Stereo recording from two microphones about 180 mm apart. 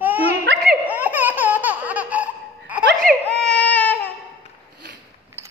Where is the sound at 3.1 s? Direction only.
50° right (ahead or behind).